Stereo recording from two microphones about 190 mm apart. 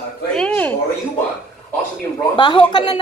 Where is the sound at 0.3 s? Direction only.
5° left (ahead or behind).